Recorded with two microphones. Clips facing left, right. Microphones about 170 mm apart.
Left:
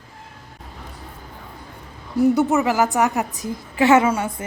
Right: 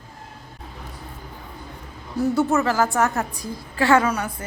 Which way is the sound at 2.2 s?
20° left (ahead or behind).